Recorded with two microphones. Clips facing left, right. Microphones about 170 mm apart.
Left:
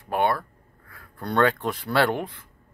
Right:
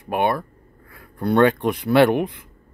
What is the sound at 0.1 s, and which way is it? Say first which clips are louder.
Speech: right 2 dB; 15° right (ahead or behind).